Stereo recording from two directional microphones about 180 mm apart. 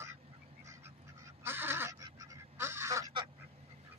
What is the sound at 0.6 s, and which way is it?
Goose, 15° right (ahead or behind).